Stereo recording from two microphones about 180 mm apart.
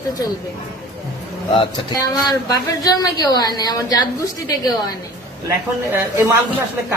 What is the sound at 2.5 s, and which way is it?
A woman's voice, 20° left (ahead or behind).